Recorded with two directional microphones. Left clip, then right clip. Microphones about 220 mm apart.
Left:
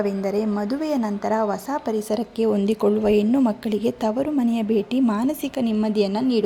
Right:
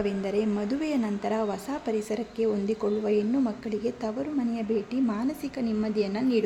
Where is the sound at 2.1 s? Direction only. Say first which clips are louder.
Left 8 dB; 35° left (ahead or behind).